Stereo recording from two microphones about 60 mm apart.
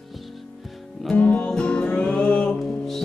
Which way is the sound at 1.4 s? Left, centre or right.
Centre.